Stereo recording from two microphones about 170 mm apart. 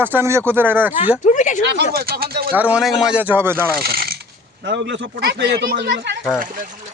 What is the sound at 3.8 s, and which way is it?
Speech, 65° right (ahead or behind).